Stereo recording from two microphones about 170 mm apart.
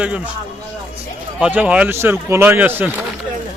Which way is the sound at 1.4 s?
10° right (ahead or behind).